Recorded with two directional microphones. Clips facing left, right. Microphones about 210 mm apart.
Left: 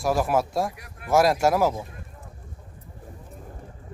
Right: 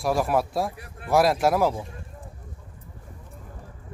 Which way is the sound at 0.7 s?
30° right (ahead or behind).